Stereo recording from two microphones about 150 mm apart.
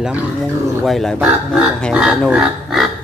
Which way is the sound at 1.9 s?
5° right (ahead or behind).